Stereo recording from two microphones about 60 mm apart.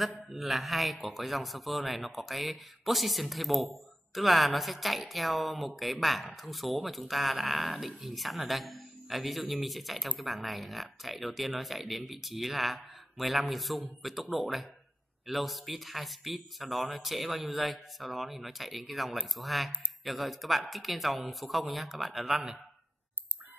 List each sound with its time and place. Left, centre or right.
0.3 s speech: centre